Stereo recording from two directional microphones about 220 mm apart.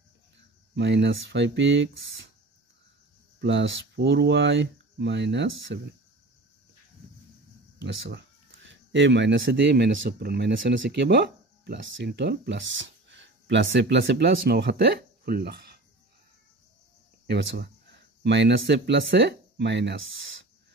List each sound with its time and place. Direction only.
0.7 s speech: 50° right (ahead or behind)
3.3 s speech: 55° right (ahead or behind)
7.8 s speech: 55° right (ahead or behind)
17.3 s speech: 50° right (ahead or behind)